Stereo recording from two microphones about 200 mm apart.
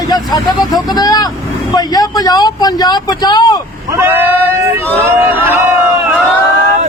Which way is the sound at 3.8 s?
10° right (ahead or behind).